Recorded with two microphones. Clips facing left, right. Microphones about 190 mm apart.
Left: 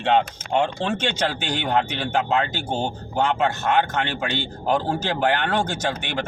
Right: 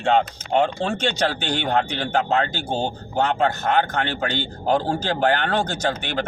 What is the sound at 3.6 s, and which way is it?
A man's voice, 45° right (ahead or behind).